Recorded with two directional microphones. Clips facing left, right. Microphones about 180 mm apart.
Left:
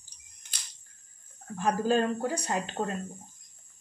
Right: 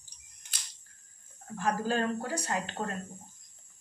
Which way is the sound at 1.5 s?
15° left (ahead or behind).